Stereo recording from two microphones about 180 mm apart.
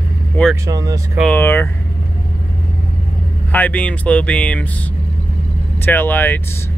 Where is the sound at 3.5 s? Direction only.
10° left (ahead or behind).